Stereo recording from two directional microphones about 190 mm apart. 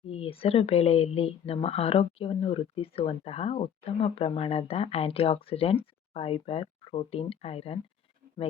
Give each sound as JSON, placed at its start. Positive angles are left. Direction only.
{"t": 0.1, "sound": "speech", "side_deg": 30}